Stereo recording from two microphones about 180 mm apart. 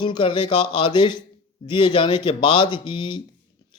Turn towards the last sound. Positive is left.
turn(degrees=25)  # may be behind; listen again after turning